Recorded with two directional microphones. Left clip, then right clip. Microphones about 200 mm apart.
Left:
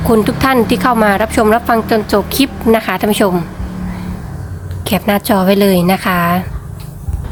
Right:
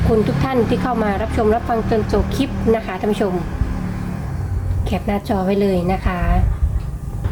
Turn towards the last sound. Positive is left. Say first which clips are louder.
# left 9 dB
turn(degrees=40)  # may be behind; listen again after turning